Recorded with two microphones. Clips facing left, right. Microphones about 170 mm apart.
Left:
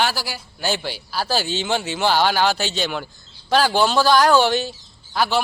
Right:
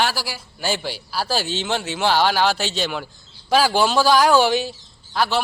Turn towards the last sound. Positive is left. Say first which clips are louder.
# even
turn(degrees=0)  # may be behind; listen again after turning